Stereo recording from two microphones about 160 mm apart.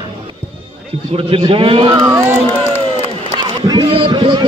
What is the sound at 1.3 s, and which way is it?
Speech, 35° right (ahead or behind).